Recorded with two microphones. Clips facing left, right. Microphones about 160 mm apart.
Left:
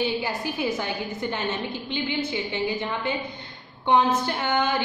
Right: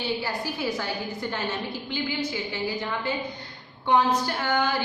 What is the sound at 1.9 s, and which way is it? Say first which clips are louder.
A woman's voice: left 2 dB; 25° left (ahead or behind).